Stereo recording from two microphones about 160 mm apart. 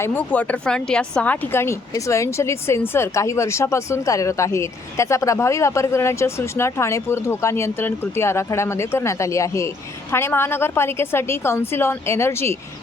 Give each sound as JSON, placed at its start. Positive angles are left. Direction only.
{"t": 0.0, "sound": "speech", "side_deg": 10}